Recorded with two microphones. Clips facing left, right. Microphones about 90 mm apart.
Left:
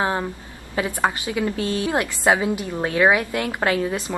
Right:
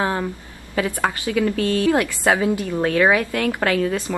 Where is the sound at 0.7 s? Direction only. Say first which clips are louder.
Even; 20° left (ahead or behind).